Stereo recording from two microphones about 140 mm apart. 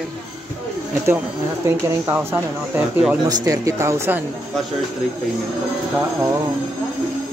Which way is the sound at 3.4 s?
20° right (ahead or behind).